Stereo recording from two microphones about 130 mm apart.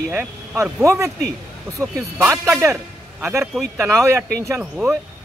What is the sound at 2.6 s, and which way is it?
A man's voice, 15° right (ahead or behind).